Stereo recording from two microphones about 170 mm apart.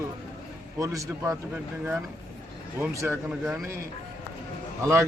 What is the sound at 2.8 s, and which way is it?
Speech, 15° right (ahead or behind).